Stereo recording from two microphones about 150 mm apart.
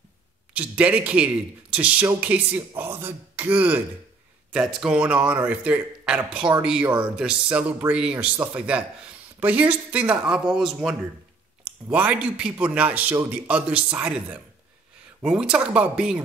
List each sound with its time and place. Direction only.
0.5 s a man's voice: 10° right (ahead or behind)